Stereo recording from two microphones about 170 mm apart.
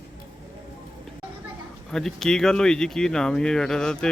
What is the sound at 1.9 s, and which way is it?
Speech, 5° left (ahead or behind).